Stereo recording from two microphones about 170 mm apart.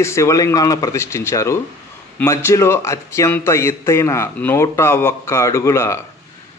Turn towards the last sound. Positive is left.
turn(degrees=15)  # may be behind; listen again after turning